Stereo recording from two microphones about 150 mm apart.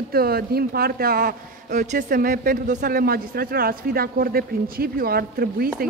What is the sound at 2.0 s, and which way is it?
Speech, 70° right (ahead or behind).